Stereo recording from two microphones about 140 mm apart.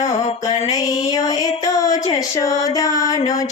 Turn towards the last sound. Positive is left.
turn(degrees=25)  # may be behind; listen again after turning